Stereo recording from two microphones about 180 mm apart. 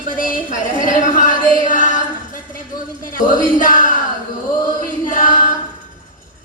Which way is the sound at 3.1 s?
50° left (ahead or behind).